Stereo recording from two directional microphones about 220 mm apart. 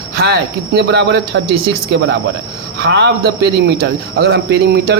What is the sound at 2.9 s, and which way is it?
A man's voice, 50° right (ahead or behind).